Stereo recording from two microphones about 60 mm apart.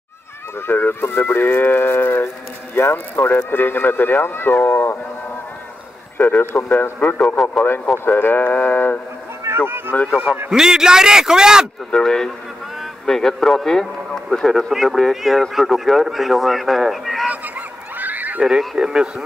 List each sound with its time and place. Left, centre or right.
0.6 s speech: left
6.1 s speech: left
9.5 s music: right
9.9 s speech: left
10.5 s a man's voice: centre
11.9 s speech: centre
17.3 s honk: right
18.4 s a man's voice: centre